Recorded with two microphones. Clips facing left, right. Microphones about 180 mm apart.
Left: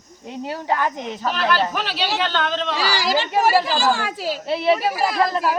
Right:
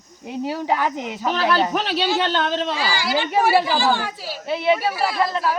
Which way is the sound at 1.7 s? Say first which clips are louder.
Right 3 dB; 30° right (ahead or behind).